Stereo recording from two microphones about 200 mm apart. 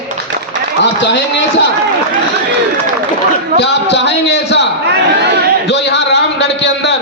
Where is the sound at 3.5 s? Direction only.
60° left (ahead or behind).